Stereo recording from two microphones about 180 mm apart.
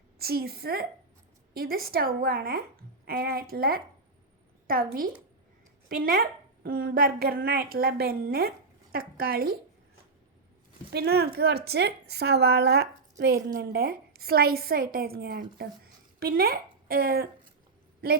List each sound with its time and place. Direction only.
0.2 s a woman's voice: 60° right (ahead or behind)
10.9 s a woman's voice: 60° right (ahead or behind)